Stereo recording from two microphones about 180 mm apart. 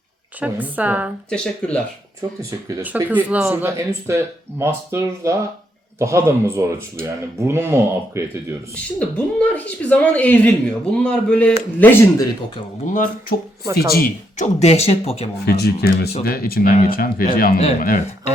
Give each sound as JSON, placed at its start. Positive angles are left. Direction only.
{"t": 0.3, "sound": "speech", "side_deg": -10}
{"t": 1.3, "sound": "speech", "side_deg": 5}
{"t": 2.8, "sound": "speech", "side_deg": -10}
{"t": 8.7, "sound": "speech", "side_deg": 5}
{"t": 13.7, "sound": "speech", "side_deg": 55}
{"t": 15.4, "sound": "speech", "side_deg": 65}